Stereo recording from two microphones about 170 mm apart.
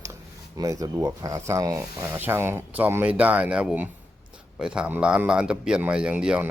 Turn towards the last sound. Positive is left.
turn(degrees=-5)  # may be behind; listen again after turning